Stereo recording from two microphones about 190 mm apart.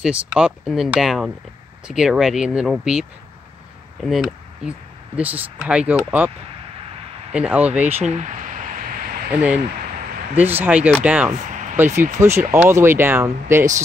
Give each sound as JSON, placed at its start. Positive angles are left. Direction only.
{"t": 0.0, "sound": "speech", "side_deg": -5}
{"t": 7.3, "sound": "speech", "side_deg": -5}
{"t": 7.9, "sound": "a sound", "side_deg": -35}
{"t": 9.3, "sound": "speech", "side_deg": -10}